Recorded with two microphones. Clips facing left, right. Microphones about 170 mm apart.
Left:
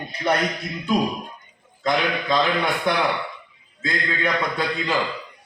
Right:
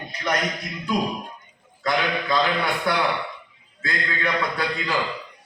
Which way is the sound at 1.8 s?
20° left (ahead or behind).